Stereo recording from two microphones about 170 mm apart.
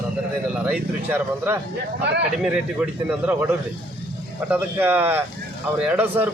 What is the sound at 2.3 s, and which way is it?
Speech, 5° right (ahead or behind).